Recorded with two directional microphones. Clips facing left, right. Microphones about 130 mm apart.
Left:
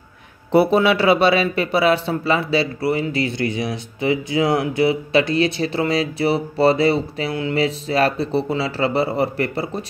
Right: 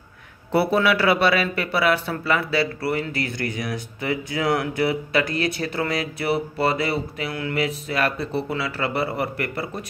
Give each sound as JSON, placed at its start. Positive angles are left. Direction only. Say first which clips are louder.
{"t": 0.5, "sound": "speech", "louder": "left 4 dB", "side_deg": 20}